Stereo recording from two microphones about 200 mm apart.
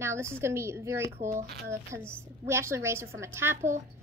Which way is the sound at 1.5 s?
55° right (ahead or behind).